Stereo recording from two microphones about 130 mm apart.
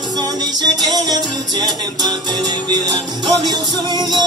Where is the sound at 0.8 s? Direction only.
30° right (ahead or behind).